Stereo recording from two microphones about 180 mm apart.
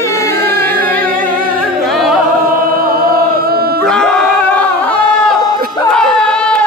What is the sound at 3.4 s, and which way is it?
Dog, 55° right (ahead or behind).